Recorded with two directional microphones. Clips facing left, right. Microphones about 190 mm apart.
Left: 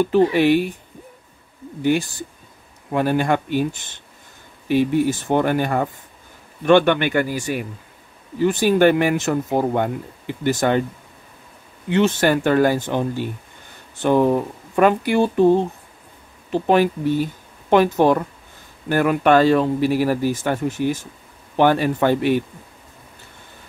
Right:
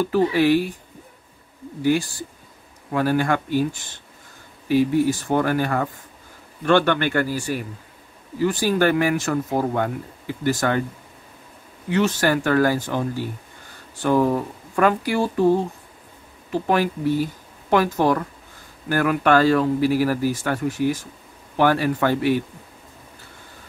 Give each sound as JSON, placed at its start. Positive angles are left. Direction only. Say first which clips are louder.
{"t": 0.0, "sound": "speech", "louder": "left 3 dB", "side_deg": 20}
{"t": 1.8, "sound": "a man's voice", "louder": "left 1 dB", "side_deg": 20}
{"t": 11.9, "sound": "speech", "louder": "left 3 dB", "side_deg": 25}